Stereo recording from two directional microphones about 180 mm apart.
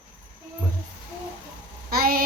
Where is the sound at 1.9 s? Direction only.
55° right (ahead or behind).